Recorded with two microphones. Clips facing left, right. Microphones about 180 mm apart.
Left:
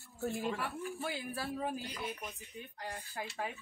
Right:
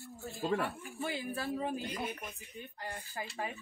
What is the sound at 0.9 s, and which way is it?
A woman's voice, centre (ahead or behind).